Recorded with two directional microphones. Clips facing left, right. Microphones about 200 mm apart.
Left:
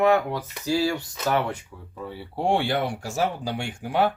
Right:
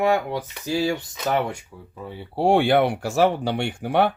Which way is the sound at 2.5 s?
60° right (ahead or behind).